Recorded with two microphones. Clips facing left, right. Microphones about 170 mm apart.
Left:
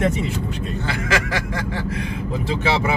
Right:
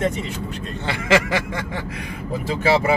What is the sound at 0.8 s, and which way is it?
Speech, 25° right (ahead or behind).